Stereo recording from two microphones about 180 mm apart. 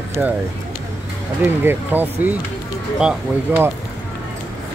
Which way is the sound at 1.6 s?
10° right (ahead or behind).